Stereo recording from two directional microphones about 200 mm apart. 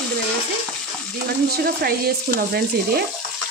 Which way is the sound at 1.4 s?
50° right (ahead or behind).